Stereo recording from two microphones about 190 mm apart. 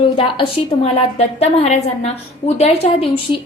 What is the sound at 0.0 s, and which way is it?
A woman's voice, 30° left (ahead or behind).